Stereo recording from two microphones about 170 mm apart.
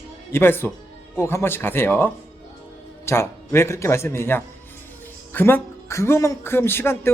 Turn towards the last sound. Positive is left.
turn(degrees=15)  # may be behind; listen again after turning